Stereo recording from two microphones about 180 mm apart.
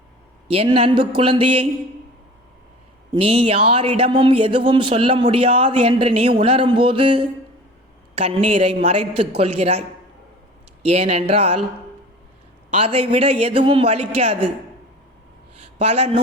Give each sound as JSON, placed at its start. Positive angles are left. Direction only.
{"t": 0.4, "sound": "speech", "side_deg": -30}
{"t": 3.1, "sound": "speech", "side_deg": -30}
{"t": 10.8, "sound": "speech", "side_deg": -35}
{"t": 12.7, "sound": "speech", "side_deg": -35}
{"t": 15.8, "sound": "speech", "side_deg": -35}